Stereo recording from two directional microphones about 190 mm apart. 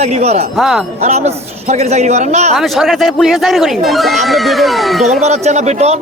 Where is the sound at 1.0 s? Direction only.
35° right (ahead or behind).